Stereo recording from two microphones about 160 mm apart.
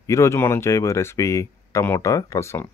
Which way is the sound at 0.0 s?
20° left (ahead or behind).